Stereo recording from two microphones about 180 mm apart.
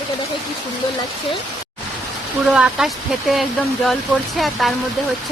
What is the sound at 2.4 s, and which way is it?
Speech, 5° right (ahead or behind).